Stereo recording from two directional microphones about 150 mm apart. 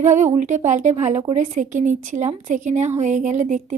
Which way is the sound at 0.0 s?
55° right (ahead or behind).